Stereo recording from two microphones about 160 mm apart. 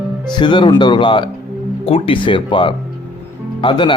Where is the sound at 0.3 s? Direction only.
30° left (ahead or behind).